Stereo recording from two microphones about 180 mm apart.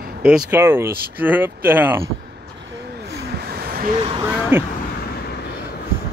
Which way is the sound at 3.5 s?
55° right (ahead or behind).